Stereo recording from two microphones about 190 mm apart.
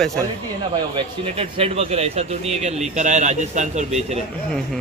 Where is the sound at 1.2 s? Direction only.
30° right (ahead or behind).